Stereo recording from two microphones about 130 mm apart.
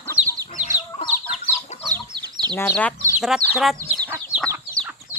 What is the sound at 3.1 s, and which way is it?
Speech, 5° right (ahead or behind).